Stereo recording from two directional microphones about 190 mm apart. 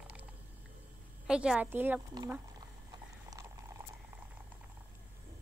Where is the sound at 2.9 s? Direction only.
15° right (ahead or behind).